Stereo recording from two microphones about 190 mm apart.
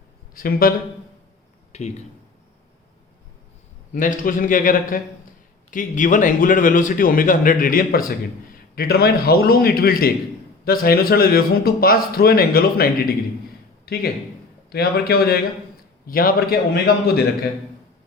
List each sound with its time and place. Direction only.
0.3 s a man's voice: 50° left (ahead or behind)
1.7 s speech: 35° left (ahead or behind)
3.9 s a man's voice: 45° left (ahead or behind)